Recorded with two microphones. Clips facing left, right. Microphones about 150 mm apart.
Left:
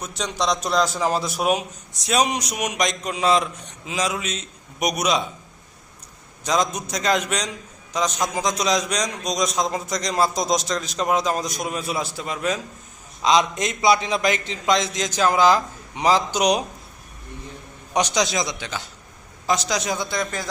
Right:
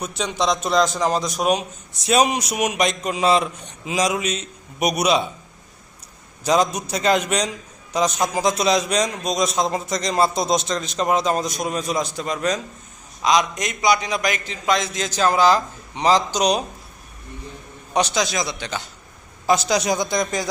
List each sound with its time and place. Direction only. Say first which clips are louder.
0.2 s a man's voice: right 2 dB; centre (ahead or behind)
6.4 s a man's voice: right 4 dB; 5° right (ahead or behind)
13.2 s a man's voice: even; 25° left (ahead or behind)
17.9 s a man's voice: even; 15° left (ahead or behind)
19.5 s a man's voice: right 4 dB; 5° right (ahead or behind)
20.1 s speech: right 4 dB; 15° right (ahead or behind)